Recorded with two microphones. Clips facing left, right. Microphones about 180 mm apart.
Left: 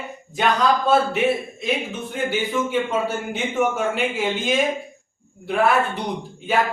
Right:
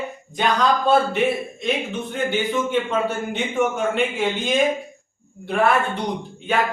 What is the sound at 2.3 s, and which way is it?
A man's voice, 5° left (ahead or behind).